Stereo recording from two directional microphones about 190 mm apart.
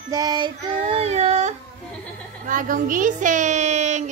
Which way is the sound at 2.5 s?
45° right (ahead or behind).